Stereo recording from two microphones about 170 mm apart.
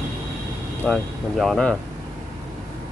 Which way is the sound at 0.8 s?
5° left (ahead or behind).